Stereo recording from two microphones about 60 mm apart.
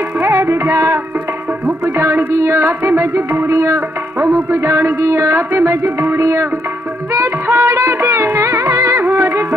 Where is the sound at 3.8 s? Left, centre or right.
Right.